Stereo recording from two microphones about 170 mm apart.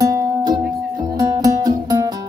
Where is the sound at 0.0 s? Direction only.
25° right (ahead or behind).